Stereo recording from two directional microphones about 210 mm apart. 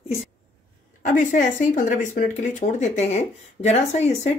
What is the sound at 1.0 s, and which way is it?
Speech, 40° left (ahead or behind).